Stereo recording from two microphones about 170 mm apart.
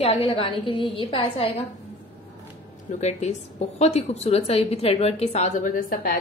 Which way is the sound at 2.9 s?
45° left (ahead or behind).